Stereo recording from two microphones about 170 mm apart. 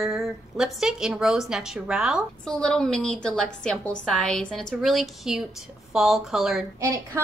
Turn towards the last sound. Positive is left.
turn(degrees=-15)  # may be behind; listen again after turning